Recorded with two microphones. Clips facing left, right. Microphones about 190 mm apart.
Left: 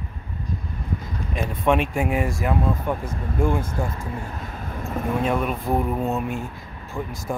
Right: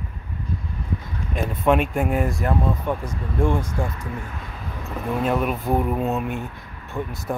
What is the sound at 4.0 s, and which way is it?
Speech, 35° left (ahead or behind).